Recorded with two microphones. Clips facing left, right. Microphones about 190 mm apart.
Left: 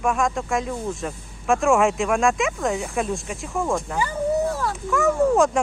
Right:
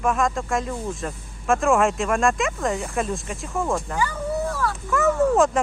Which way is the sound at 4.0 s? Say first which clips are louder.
Left 3 dB; 15° left (ahead or behind).